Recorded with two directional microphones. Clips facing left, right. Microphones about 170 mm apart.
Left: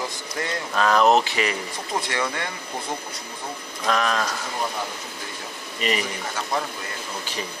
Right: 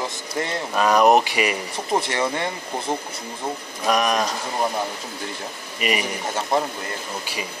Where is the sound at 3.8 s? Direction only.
15° right (ahead or behind).